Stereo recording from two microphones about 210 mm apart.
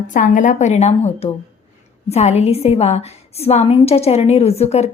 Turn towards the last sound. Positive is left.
turn(degrees=30)  # may be behind; listen again after turning